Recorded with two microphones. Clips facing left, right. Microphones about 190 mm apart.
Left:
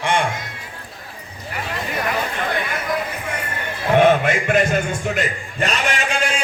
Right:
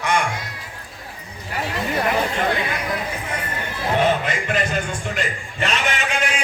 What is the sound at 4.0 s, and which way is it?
A man's voice, 50° left (ahead or behind).